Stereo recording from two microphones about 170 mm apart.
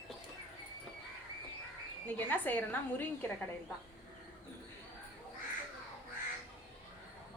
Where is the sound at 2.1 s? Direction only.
10° left (ahead or behind).